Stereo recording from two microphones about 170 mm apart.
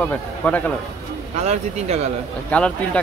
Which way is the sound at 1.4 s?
40° right (ahead or behind).